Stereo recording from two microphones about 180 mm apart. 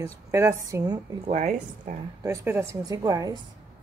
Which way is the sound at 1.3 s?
40° right (ahead or behind).